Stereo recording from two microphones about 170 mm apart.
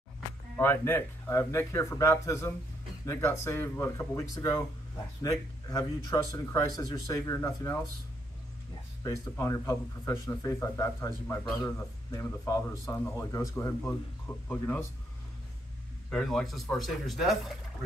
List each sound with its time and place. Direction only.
0.6 s speech: 10° left (ahead or behind)
9.0 s speech: 20° left (ahead or behind)
16.1 s speech: 5° left (ahead or behind)